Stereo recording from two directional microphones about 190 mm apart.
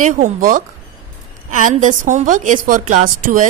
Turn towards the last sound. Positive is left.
turn(degrees=-45)  # may be behind; listen again after turning